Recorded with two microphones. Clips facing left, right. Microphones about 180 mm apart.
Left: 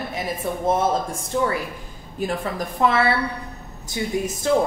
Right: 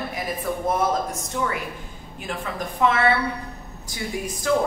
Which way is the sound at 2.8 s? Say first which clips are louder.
Left 1 dB; 35° left (ahead or behind).